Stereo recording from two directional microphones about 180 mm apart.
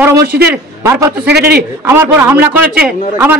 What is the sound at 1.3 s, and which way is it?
Speech, 65° right (ahead or behind).